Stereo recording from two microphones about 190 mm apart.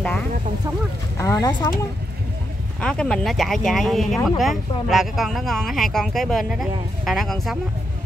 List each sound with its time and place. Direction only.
1.1 s speech: 15° left (ahead or behind)
2.8 s speech: 5° left (ahead or behind)